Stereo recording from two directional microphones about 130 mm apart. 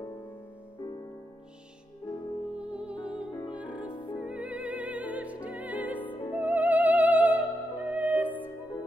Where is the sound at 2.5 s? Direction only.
5° right (ahead or behind).